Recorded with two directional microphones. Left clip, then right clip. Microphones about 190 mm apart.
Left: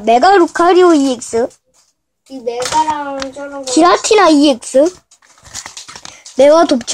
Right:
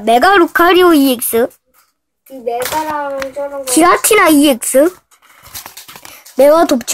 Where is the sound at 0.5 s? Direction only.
40° right (ahead or behind).